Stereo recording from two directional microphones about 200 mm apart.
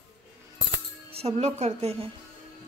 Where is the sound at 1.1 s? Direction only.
30° right (ahead or behind).